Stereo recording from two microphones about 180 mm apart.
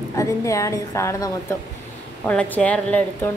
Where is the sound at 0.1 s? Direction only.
15° left (ahead or behind).